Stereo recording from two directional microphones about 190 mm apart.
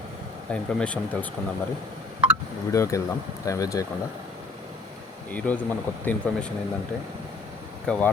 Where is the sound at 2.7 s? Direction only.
15° left (ahead or behind).